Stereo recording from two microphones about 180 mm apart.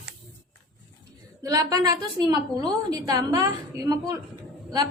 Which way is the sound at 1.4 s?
20° right (ahead or behind).